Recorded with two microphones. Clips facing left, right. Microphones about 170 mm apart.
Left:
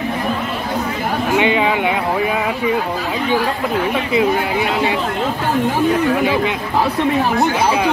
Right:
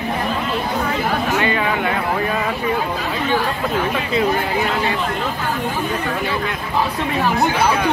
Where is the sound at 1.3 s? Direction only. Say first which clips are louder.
Left 8 dB; 15° left (ahead or behind).